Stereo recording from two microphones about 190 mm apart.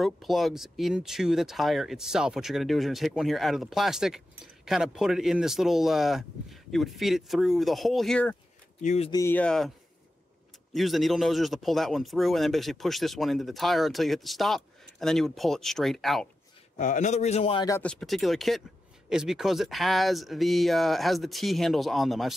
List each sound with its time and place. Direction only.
0.0 s speech: centre (ahead or behind)
8.8 s a man's voice: 35° left (ahead or behind)
9.1 s speech: 10° left (ahead or behind)
10.7 s speech: centre (ahead or behind)
16.7 s a man's voice: 40° left (ahead or behind)
17.6 s speech: 15° left (ahead or behind)
18.0 s speech: centre (ahead or behind)